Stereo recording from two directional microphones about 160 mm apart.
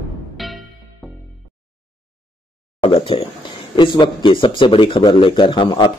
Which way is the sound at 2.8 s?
35° left (ahead or behind).